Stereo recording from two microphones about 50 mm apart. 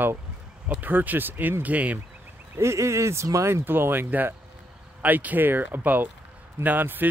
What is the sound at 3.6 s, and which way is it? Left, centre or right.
Speech, right.